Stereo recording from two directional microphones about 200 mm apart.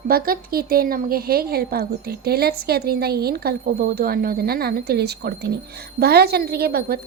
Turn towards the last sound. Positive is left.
turn(degrees=-50)  # may be behind; listen again after turning